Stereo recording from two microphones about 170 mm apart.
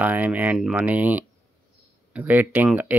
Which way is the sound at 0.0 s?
10° right (ahead or behind).